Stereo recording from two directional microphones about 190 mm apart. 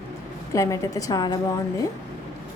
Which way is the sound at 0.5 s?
15° left (ahead or behind).